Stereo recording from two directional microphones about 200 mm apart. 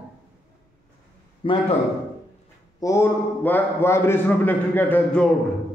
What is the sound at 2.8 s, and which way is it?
A man's voice, 15° left (ahead or behind).